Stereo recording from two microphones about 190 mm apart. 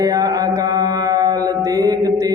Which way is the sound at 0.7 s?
20° right (ahead or behind).